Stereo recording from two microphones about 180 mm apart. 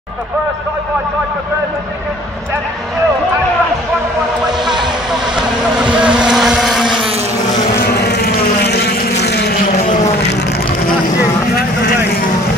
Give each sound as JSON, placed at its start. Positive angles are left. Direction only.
{"t": 4.5, "sound": "a sound", "side_deg": -25}
{"t": 5.3, "sound": "motorboat", "side_deg": -5}
{"t": 7.7, "sound": "vehicle", "side_deg": 65}
{"t": 9.8, "sound": "vehicle", "side_deg": 40}